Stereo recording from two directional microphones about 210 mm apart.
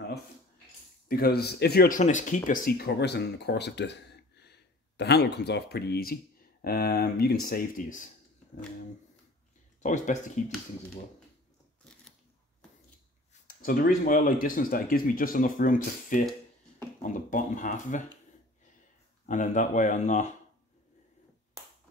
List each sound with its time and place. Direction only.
1.0 s speech: 45° left (ahead or behind)
9.8 s speech: 35° left (ahead or behind)
13.5 s speech: 40° left (ahead or behind)
19.2 s speech: 35° left (ahead or behind)